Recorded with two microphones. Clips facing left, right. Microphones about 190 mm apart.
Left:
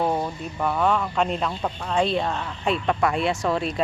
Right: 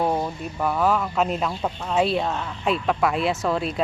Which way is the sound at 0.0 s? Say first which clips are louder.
Right 1 dB; 5° right (ahead or behind).